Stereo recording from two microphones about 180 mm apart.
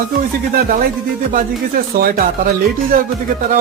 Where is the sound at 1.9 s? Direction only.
55° right (ahead or behind).